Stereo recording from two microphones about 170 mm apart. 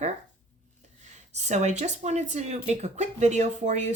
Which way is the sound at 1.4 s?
40° right (ahead or behind).